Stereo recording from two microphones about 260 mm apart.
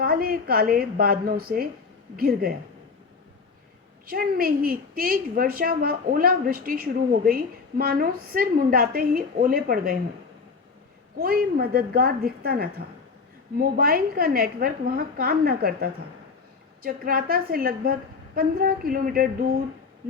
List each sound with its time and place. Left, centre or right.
0.0 s a woman's voice: right
4.0 s a woman's voice: right
11.2 s a woman's voice: right